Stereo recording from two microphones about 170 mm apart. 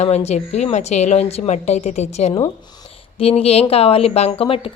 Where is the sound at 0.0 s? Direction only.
40° left (ahead or behind).